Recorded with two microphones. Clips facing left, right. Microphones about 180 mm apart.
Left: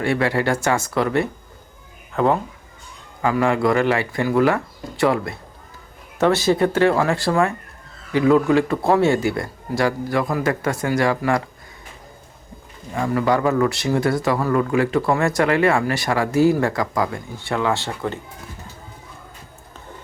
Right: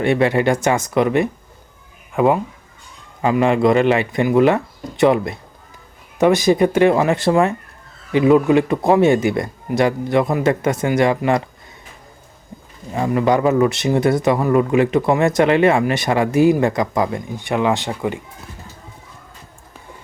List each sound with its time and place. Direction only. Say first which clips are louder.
0.0 s speech: right 4 dB; 20° right (ahead or behind)
12.9 s speech: right 3 dB; 20° right (ahead or behind)